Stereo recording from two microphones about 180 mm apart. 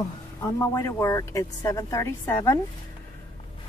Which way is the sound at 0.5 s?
15° left (ahead or behind).